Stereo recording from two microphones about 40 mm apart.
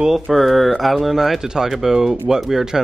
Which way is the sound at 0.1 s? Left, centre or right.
Centre.